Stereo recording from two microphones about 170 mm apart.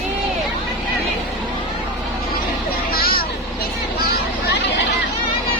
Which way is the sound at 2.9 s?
60° left (ahead or behind).